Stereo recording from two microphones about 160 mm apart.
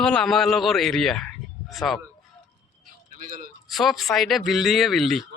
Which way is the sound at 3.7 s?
Centre (ahead or behind).